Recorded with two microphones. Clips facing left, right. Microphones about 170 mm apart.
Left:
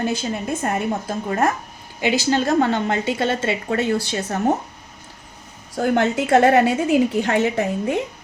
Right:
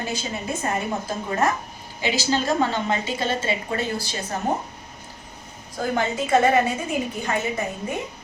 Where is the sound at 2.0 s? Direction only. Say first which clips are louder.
Left 4 dB; 55° left (ahead or behind).